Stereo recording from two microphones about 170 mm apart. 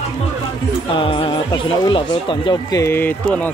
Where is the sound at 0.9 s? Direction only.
30° left (ahead or behind).